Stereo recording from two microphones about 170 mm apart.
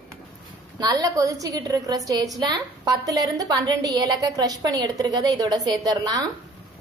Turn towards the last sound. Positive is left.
turn(degrees=-25)  # may be behind; listen again after turning